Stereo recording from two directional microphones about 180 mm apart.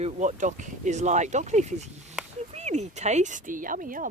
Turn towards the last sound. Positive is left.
turn(degrees=-50)  # may be behind; listen again after turning